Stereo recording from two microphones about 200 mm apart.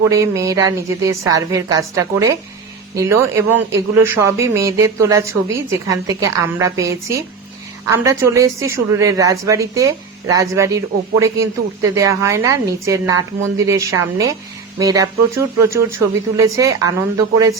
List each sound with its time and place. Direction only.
0.1 s a woman's voice: 15° right (ahead or behind)